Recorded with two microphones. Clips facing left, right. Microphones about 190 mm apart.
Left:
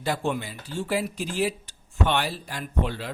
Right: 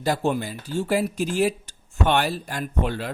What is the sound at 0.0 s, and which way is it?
Speech, 40° right (ahead or behind).